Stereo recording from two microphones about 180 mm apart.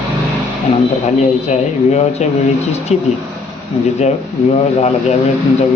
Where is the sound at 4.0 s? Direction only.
40° left (ahead or behind).